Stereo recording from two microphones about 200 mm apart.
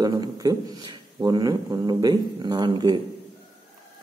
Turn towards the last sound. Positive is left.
turn(degrees=-20)  # may be behind; listen again after turning